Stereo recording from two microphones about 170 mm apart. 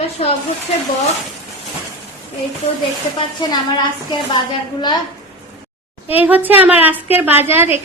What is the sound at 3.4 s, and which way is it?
Speech, 25° left (ahead or behind).